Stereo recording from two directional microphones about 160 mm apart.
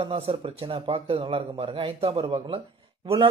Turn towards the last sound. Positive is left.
turn(degrees=-35)  # may be behind; listen again after turning